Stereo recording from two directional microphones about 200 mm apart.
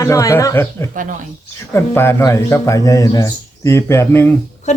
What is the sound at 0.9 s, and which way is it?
Speech, 40° right (ahead or behind).